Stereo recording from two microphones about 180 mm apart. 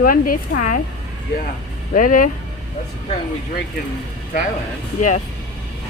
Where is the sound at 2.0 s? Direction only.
50° left (ahead or behind).